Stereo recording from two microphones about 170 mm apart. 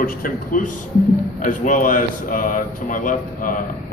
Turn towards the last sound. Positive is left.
turn(degrees=50)  # may be behind; listen again after turning